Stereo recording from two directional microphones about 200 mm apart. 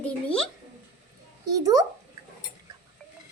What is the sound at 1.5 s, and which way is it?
Speech, 20° right (ahead or behind).